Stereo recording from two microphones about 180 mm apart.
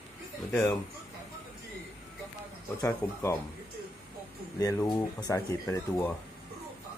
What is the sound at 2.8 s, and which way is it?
Speech, 15° left (ahead or behind).